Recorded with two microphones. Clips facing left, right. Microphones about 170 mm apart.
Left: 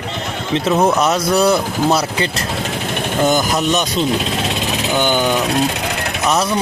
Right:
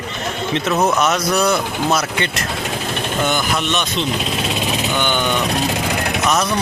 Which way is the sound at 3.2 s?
40° left (ahead or behind).